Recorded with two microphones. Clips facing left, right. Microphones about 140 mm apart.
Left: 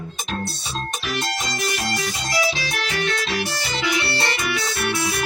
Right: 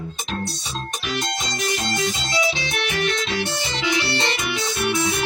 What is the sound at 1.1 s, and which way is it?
Music, 15° right (ahead or behind).